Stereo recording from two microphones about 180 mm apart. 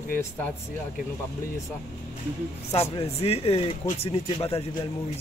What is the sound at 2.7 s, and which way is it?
Speech, 35° left (ahead or behind).